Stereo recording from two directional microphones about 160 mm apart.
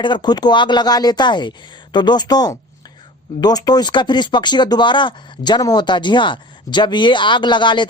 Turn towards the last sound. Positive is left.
turn(degrees=30)  # may be behind; listen again after turning